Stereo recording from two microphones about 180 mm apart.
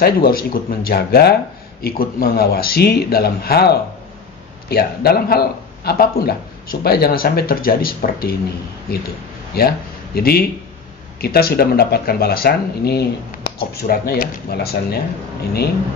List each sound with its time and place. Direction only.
0.0 s speech: 55° left (ahead or behind)
9.6 s speech: 60° left (ahead or behind)